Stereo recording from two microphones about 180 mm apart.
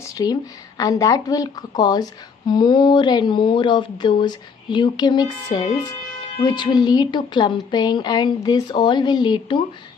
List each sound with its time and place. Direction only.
0.0 s speech: 20° left (ahead or behind)